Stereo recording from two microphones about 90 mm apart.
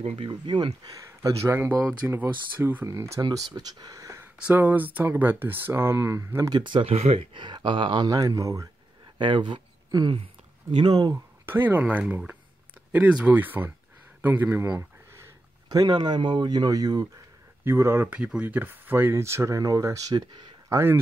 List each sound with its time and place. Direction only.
0.1 s speech: 75° right (ahead or behind); by 0.7 s 60° right (ahead or behind)
1.2 s speech: 30° right (ahead or behind)
3.2 s speech: 50° right (ahead or behind)
4.6 s speech: 20° right (ahead or behind)
6.5 s speech: 65° right (ahead or behind)
8.1 s speech: 40° right (ahead or behind)
9.2 s speech: 65° right (ahead or behind)
10.0 s speech: 85° right
10.8 s speech: 55° right (ahead or behind)
11.4 s speech: 25° right (ahead or behind)
15.7 s speech: 50° right (ahead or behind)
17.6 s speech: 30° right (ahead or behind)
20.7 s speech: 25° right (ahead or behind)